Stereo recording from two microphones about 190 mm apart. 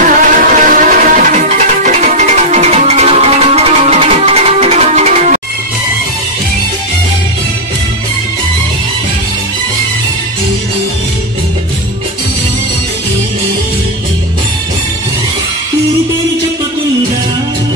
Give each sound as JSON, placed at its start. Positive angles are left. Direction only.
{"t": 0.0, "sound": "music", "side_deg": -45}